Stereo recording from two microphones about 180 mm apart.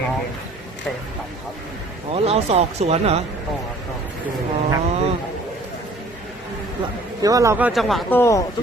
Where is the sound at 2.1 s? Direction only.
35° right (ahead or behind).